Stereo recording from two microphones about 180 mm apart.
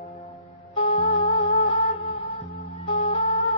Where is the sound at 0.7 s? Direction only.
30° left (ahead or behind).